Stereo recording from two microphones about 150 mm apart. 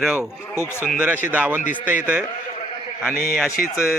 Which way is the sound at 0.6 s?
15° left (ahead or behind).